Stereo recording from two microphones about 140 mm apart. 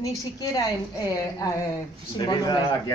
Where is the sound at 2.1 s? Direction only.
30° left (ahead or behind).